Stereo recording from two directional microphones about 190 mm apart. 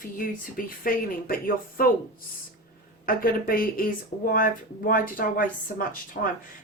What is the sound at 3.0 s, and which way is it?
Speech, 50° left (ahead or behind).